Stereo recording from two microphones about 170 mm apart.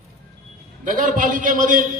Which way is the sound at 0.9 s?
50° right (ahead or behind).